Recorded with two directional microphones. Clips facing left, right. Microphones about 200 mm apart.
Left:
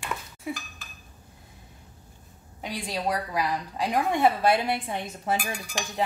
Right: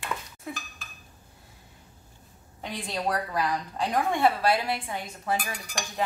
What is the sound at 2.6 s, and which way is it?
A woman's voice, 10° left (ahead or behind).